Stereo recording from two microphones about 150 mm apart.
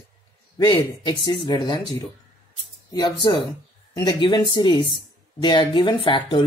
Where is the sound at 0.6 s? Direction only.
30° left (ahead or behind).